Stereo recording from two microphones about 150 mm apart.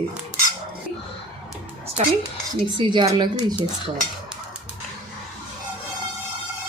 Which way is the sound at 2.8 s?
30° right (ahead or behind).